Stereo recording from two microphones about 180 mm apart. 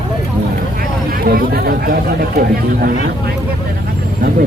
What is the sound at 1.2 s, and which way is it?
Speech, 55° right (ahead or behind).